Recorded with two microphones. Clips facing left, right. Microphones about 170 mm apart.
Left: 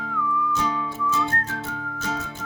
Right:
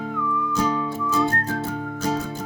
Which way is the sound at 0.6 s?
35° right (ahead or behind).